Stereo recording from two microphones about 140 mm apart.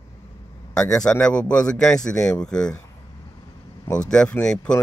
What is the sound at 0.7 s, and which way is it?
A man's voice, 5° left (ahead or behind).